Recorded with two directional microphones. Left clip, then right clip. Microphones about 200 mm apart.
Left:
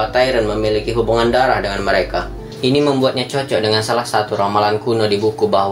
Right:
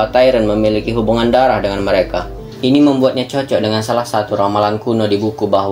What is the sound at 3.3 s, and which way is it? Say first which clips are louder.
Speech: right 1 dB; 35° right (ahead or behind).